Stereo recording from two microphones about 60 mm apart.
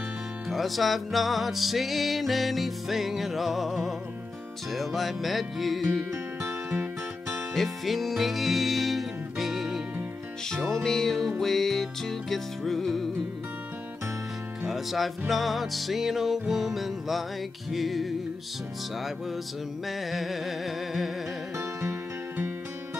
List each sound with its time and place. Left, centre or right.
0.5 s music: centre
6.7 s music: right
7.5 s music: centre
10.7 s music: centre
14.6 s music: centre
19.9 s music: centre